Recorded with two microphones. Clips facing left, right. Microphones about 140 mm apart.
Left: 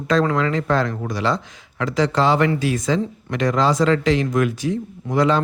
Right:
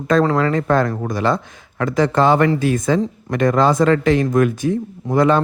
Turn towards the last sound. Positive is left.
turn(degrees=-50)  # may be behind; listen again after turning